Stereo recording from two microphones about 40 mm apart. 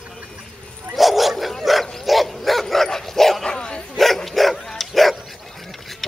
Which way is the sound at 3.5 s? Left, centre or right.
Left.